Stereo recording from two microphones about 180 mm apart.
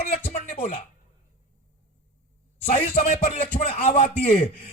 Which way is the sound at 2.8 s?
40° left (ahead or behind).